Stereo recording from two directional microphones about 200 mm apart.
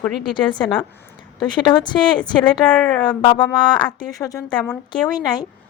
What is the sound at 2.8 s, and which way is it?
Speech, 5° left (ahead or behind).